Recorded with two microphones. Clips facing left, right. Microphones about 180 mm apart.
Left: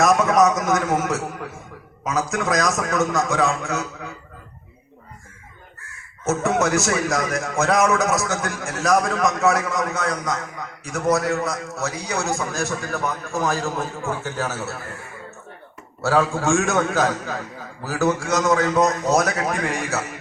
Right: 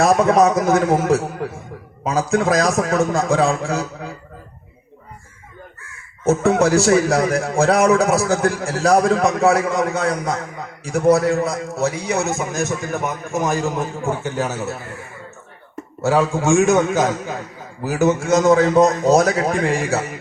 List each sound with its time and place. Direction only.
0.0 s a man's voice: 30° right (ahead or behind)
6.2 s a man's voice: 30° right (ahead or behind)
16.0 s a man's voice: 20° right (ahead or behind)